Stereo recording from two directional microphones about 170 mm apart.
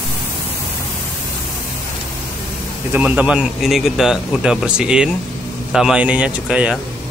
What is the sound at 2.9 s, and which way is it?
A man's voice, 10° right (ahead or behind).